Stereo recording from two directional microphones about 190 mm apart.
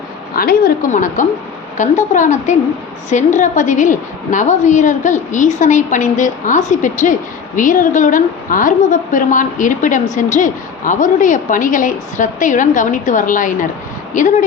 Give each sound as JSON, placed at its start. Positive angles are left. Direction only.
{"t": 0.3, "sound": "a woman's voice", "side_deg": 50}